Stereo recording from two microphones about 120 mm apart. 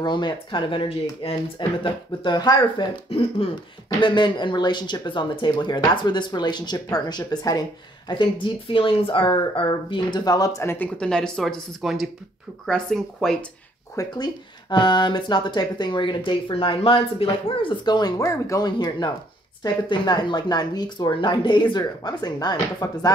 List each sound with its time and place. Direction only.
0.0 s speech: 40° left (ahead or behind)
3.1 s speech: 50° left (ahead or behind)
4.0 s speech: 40° left (ahead or behind)
8.1 s speech: 45° left (ahead or behind); by 10.9 s 20° left (ahead or behind)
11.0 s speech: 5° left (ahead or behind)
13.9 s speech: 35° left (ahead or behind)